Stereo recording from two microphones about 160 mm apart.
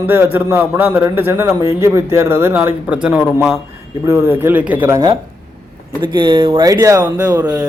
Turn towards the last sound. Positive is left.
turn(degrees=-25)  # may be behind; listen again after turning